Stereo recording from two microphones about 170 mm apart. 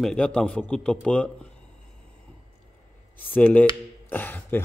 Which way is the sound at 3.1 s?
10° left (ahead or behind).